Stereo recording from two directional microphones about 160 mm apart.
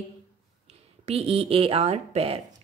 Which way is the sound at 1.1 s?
40° right (ahead or behind).